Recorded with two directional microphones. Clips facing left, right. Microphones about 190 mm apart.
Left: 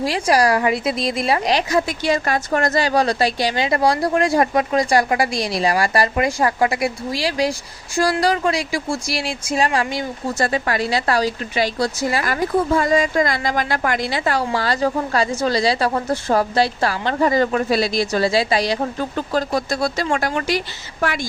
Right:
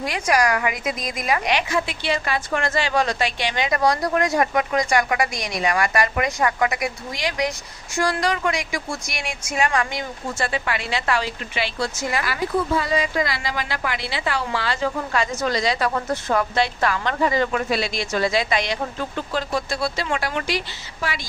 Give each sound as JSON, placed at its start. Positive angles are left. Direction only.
{"t": 0.0, "sound": "speech", "side_deg": 30}